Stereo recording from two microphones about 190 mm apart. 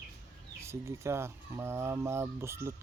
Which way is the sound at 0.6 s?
15° right (ahead or behind).